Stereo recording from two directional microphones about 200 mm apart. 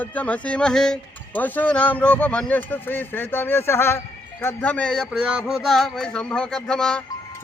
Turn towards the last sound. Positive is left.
turn(degrees=5)  # may be behind; listen again after turning